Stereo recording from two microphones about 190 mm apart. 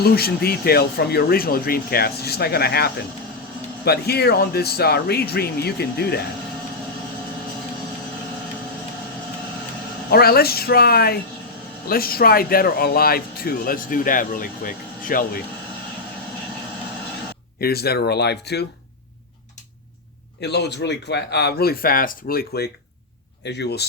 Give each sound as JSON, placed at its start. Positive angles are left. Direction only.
{"t": 0.0, "sound": "speech", "side_deg": 55}
{"t": 10.1, "sound": "speech", "side_deg": 55}
{"t": 17.6, "sound": "speech", "side_deg": 55}
{"t": 20.4, "sound": "speech", "side_deg": 60}